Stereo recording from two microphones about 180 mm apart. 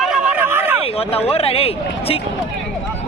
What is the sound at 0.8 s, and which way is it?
Speech, 35° left (ahead or behind).